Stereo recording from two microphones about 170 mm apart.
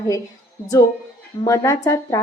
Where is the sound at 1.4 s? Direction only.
20° left (ahead or behind).